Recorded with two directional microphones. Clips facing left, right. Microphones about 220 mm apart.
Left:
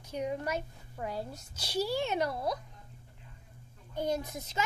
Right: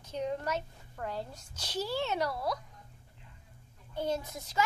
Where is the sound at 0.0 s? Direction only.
10° left (ahead or behind).